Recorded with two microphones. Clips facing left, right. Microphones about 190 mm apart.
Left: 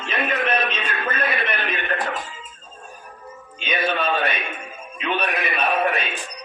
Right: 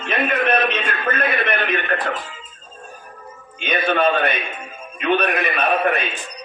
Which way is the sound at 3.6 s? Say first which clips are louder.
Right 5 dB; 55° right (ahead or behind).